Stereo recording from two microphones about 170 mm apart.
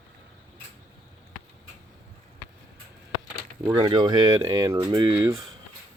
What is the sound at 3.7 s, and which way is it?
Speech, 25° right (ahead or behind).